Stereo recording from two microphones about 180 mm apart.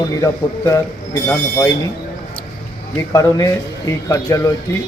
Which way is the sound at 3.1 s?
20° left (ahead or behind).